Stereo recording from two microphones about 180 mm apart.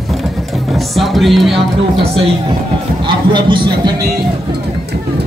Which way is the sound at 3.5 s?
25° right (ahead or behind).